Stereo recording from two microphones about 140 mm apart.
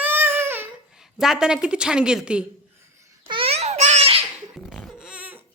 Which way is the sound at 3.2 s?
40° right (ahead or behind).